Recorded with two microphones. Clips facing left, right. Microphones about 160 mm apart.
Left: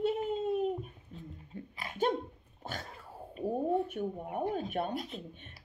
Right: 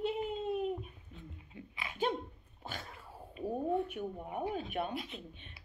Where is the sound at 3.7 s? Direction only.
40° left (ahead or behind).